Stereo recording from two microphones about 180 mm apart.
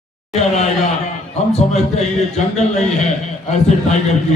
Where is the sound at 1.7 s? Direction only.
40° left (ahead or behind).